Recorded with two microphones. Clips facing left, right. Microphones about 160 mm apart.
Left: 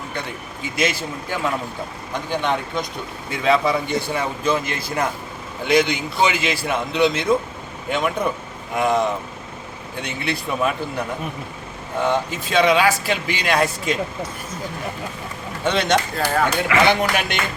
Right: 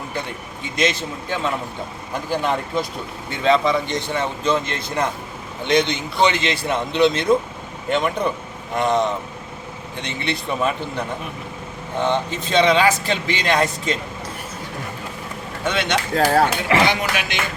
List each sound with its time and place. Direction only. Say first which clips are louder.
0.9 s speech: right 1 dB; 10° left (ahead or behind)
2.3 s a man's voice: right 1 dB; 5° right (ahead or behind)
3.4 s speech: right 1 dB; 5° left (ahead or behind)
5.6 s a man's voice: left 1 dB; 5° left (ahead or behind)
12.0 s speech: even; 10° left (ahead or behind)
15.6 s speech: left 3 dB; 35° left (ahead or behind)
16.3 s speech: left 1 dB; 35° right (ahead or behind)
16.8 s speech: left 2 dB; 55° left (ahead or behind)